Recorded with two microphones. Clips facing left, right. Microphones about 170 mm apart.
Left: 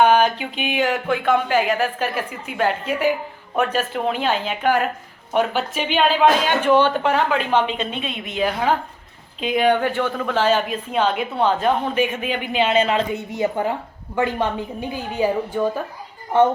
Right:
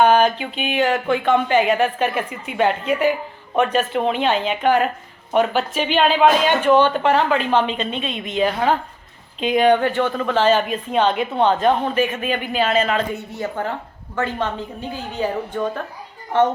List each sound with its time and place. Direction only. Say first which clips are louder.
0.0 s a man's voice: right 1 dB; 10° left (ahead or behind); by 13.1 s 25° left (ahead or behind)
13.3 s speech: left 6 dB; 15° left (ahead or behind)